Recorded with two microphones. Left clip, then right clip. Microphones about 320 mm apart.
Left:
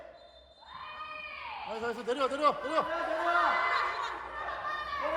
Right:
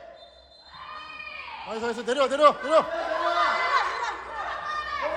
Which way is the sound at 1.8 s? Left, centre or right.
Right.